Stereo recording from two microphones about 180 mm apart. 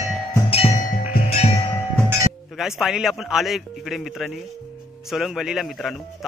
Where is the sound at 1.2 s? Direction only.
35° left (ahead or behind).